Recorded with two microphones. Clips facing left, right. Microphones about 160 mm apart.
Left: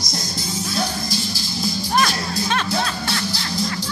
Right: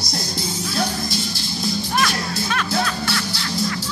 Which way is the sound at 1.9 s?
35° left (ahead or behind).